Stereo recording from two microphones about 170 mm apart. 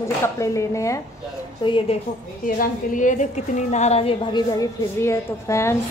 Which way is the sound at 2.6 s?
50° left (ahead or behind).